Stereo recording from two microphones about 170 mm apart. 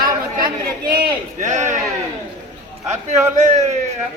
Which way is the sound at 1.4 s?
45° right (ahead or behind).